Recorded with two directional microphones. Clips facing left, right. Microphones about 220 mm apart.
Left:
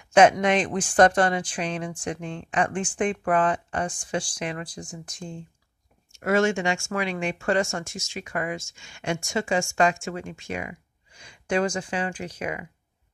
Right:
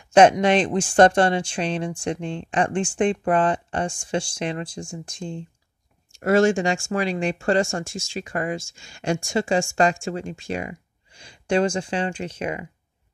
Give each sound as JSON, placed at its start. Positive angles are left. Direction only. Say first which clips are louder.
{"t": 0.1, "sound": "speech", "louder": "right 3 dB", "side_deg": -30}